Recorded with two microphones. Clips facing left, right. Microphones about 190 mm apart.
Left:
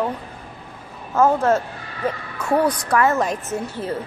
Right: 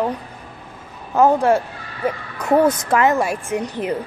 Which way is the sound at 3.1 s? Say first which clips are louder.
Right 2 dB; 10° right (ahead or behind).